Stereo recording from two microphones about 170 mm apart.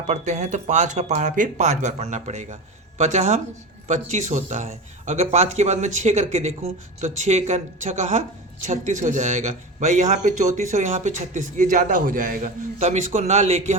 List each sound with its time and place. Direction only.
0.1 s a man's voice: 45° right (ahead or behind)